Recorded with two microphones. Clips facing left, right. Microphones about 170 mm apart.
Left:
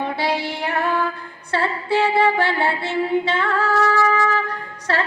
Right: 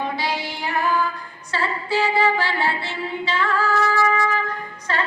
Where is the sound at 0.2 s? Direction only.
65° left (ahead or behind).